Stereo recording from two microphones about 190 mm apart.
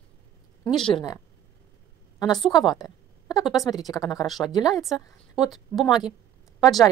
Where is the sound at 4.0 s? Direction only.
20° left (ahead or behind).